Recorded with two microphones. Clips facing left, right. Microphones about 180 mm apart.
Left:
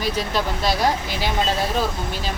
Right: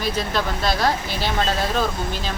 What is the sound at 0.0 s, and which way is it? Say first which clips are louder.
Speech: even; 10° left (ahead or behind).